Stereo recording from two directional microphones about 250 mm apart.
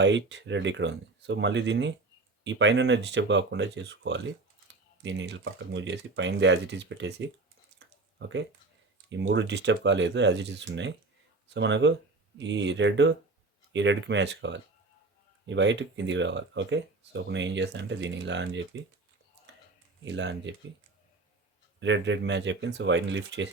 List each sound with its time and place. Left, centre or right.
0.0 s speech: right
7.8 s a sound: right
9.0 s speech: right
20.1 s speech: right
21.8 s speech: right